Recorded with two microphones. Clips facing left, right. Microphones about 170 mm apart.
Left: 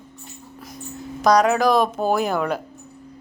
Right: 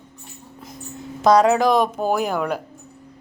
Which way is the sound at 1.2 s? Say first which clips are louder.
Right 2 dB; 25° right (ahead or behind).